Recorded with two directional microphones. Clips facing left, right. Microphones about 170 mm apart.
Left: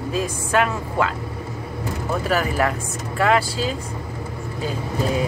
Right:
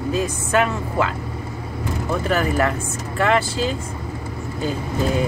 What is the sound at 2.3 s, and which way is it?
Speech, centre (ahead or behind).